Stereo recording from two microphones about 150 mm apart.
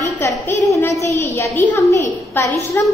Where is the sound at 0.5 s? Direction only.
20° left (ahead or behind).